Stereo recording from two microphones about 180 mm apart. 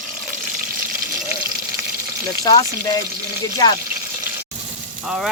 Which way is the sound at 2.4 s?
20° left (ahead or behind).